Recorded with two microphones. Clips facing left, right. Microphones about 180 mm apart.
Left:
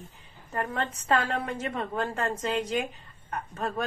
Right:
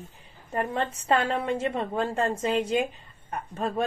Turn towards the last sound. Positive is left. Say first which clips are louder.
# right 3 dB
turn(degrees=-25)  # may be behind; listen again after turning